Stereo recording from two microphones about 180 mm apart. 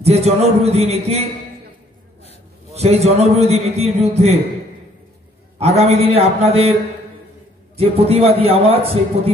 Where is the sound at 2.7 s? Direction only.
35° right (ahead or behind).